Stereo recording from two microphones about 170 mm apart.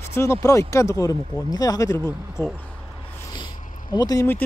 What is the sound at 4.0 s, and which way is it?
Speech, 20° left (ahead or behind).